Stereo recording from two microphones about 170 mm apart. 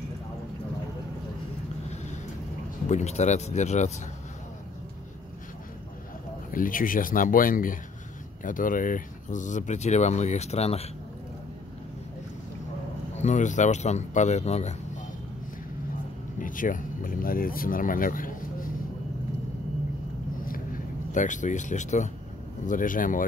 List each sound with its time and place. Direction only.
2.9 s speech: 40° left (ahead or behind)
6.5 s speech: 55° left (ahead or behind); by 10.9 s 40° left (ahead or behind)
13.1 s speech: 45° left (ahead or behind)
16.3 s speech: 50° left (ahead or behind)
20.4 s a sound: 55° left (ahead or behind)
22.7 s speech: 50° left (ahead or behind)